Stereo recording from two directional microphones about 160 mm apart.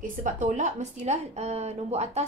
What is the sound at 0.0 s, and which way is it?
A woman's voice, 55° right (ahead or behind).